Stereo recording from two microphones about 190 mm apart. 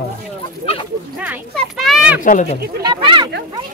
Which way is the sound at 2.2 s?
40° left (ahead or behind).